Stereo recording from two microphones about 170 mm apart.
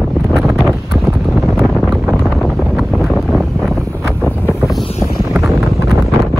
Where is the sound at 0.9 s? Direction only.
Centre (ahead or behind).